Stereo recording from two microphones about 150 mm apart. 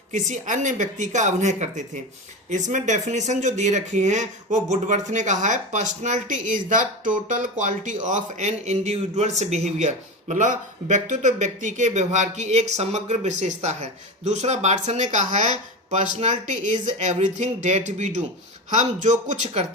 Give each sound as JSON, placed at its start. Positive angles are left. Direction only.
{"t": 0.1, "sound": "speech", "side_deg": -55}